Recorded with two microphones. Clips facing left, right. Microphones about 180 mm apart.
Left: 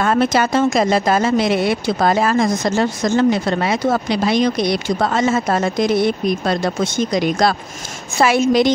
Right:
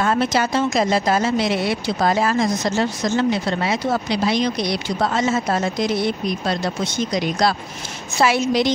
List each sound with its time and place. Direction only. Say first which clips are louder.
0.0 s speech: left 3 dB; 55° left (ahead or behind)